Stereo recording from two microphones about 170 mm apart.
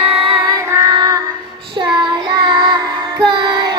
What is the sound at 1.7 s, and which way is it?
Child singing, 25° right (ahead or behind).